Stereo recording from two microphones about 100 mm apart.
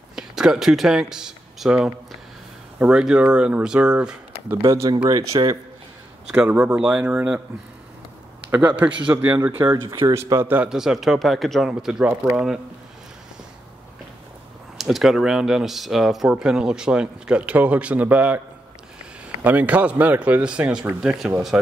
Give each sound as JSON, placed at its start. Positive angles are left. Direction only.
{"t": 0.1, "sound": "speech", "side_deg": -5}
{"t": 4.6, "sound": "speech", "side_deg": -35}
{"t": 6.3, "sound": "speech", "side_deg": -15}
{"t": 8.5, "sound": "speech", "side_deg": -15}
{"t": 9.1, "sound": "speech", "side_deg": -25}
{"t": 9.8, "sound": "speech", "side_deg": -30}
{"t": 10.7, "sound": "speech", "side_deg": -5}
{"t": 14.8, "sound": "speech", "side_deg": 0}
{"t": 19.4, "sound": "speech", "side_deg": -15}